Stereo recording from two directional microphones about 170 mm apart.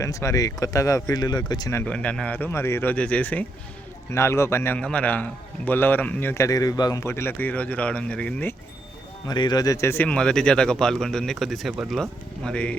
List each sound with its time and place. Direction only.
0.0 s speech: 20° left (ahead or behind)
1.8 s a man's voice: 10° left (ahead or behind)
9.2 s a man's voice: 25° left (ahead or behind); by 12.7 s 5° left (ahead or behind)